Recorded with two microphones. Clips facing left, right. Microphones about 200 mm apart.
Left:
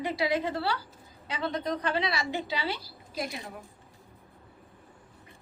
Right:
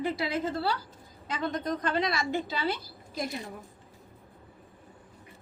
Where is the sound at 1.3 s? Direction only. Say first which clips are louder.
Even; 50° right (ahead or behind).